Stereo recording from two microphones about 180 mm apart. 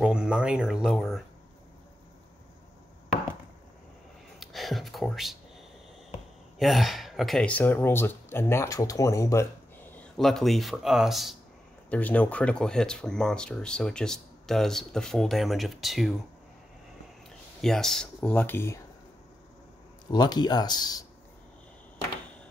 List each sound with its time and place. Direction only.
0.0 s speech: 5° right (ahead or behind)
4.4 s a sound: centre (ahead or behind)
6.6 s speech: centre (ahead or behind); by 9.5 s 15° left (ahead or behind)
9.9 s speech: centre (ahead or behind)
17.6 s speech: centre (ahead or behind)
20.1 s speech: 25° left (ahead or behind)